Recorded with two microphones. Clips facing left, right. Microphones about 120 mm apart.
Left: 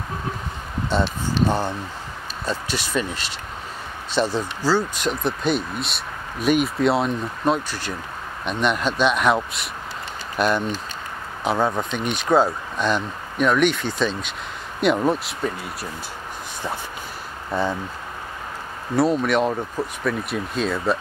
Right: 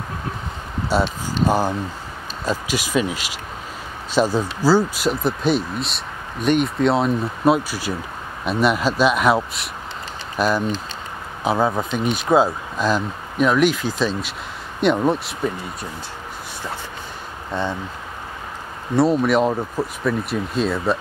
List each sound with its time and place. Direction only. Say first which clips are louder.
0.9 s speech: right 2 dB; 10° right (ahead or behind)
2.7 s speech: right 6 dB; 10° right (ahead or behind)
4.1 s speech: right 3 dB; 40° right (ahead or behind)
4.6 s speech: right 5 dB; 10° right (ahead or behind)
17.5 s speech: left 1 dB; 10° left (ahead or behind)
18.9 s speech: right 2 dB; centre (ahead or behind)